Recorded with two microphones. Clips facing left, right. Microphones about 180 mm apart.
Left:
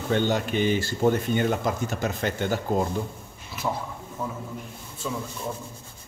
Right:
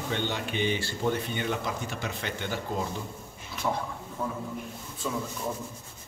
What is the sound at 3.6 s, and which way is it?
Speech, 5° left (ahead or behind).